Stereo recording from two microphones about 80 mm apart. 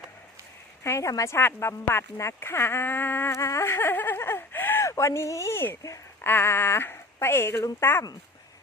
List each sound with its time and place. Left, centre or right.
0.9 s speech: left
3.3 s speech: left
4.9 s speech: left
6.2 s speech: left